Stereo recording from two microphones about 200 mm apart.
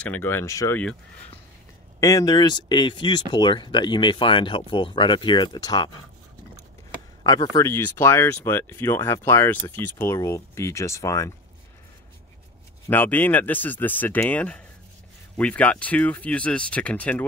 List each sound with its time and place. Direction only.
0.0 s speech: 10° left (ahead or behind)
2.0 s speech: 15° left (ahead or behind)
7.2 s speech: 15° left (ahead or behind)
12.8 s speech: 10° left (ahead or behind)